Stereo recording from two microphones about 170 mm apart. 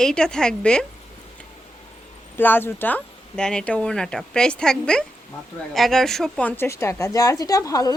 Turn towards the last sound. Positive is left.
turn(degrees=20)  # may be behind; listen again after turning